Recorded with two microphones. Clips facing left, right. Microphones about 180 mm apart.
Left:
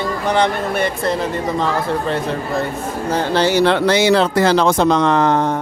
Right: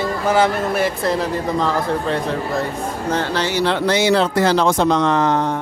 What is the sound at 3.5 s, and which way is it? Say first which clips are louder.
Speech: left 2 dB; 65° left (ahead or behind).